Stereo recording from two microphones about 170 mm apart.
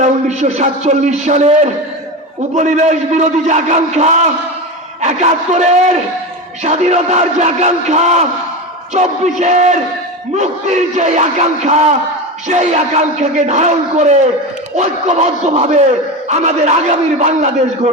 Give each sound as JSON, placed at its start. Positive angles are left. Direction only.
{"t": 0.0, "sound": "a man's voice", "side_deg": -45}
{"t": 2.6, "sound": "speech", "side_deg": -45}
{"t": 5.0, "sound": "a sound", "side_deg": -40}
{"t": 8.9, "sound": "speech", "side_deg": -45}
{"t": 14.8, "sound": "a sound", "side_deg": -40}
{"t": 16.3, "sound": "speech", "side_deg": -45}